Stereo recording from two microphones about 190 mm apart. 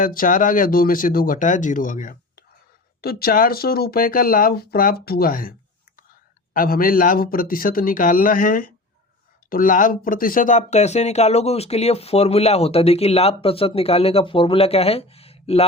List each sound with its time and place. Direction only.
0.0 s speech: 45° left (ahead or behind)